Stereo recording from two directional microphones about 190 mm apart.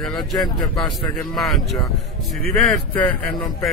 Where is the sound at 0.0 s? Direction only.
Centre (ahead or behind).